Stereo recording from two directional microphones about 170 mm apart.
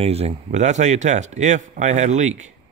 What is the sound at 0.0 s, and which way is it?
Speech, 35° right (ahead or behind).